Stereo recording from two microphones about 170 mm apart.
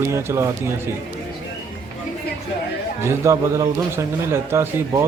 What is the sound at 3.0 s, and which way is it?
Speech, 15° right (ahead or behind).